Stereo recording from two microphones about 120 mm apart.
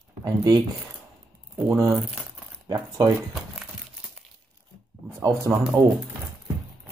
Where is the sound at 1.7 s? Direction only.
25° right (ahead or behind).